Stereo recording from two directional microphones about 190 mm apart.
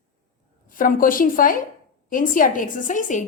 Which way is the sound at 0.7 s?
45° left (ahead or behind).